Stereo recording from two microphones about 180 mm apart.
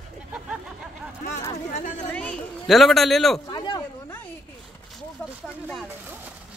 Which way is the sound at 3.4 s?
25° left (ahead or behind).